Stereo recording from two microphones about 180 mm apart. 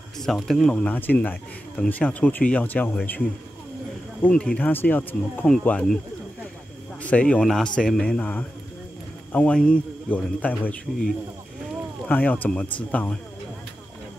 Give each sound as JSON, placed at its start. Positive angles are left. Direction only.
{"t": 0.2, "sound": "speech", "side_deg": 0}
{"t": 4.2, "sound": "speech", "side_deg": 5}
{"t": 7.0, "sound": "speech", "side_deg": 5}
{"t": 12.1, "sound": "speech", "side_deg": 10}